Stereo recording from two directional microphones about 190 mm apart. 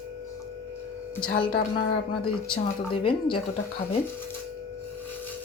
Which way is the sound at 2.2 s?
25° left (ahead or behind).